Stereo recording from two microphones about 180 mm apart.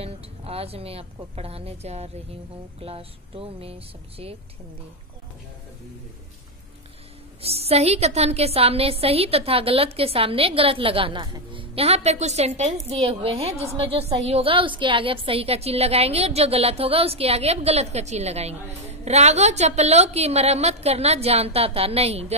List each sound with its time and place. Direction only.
0.0 s a woman's voice: 35° right (ahead or behind)
7.4 s a woman's voice: 35° right (ahead or behind)